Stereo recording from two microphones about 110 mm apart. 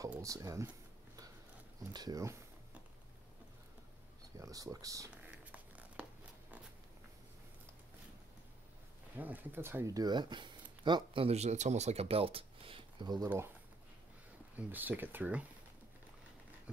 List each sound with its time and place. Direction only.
0.2 s speech: 30° right (ahead or behind)
1.9 s speech: 35° right (ahead or behind)
4.4 s speech: 30° right (ahead or behind)
5.1 s a sound: 15° right (ahead or behind)
9.1 s speech: 15° right (ahead or behind)
9.9 s speech: 40° right (ahead or behind)
11.2 s speech: 85° right; by 13.3 s 40° right (ahead or behind)
14.6 s speech: 15° right (ahead or behind)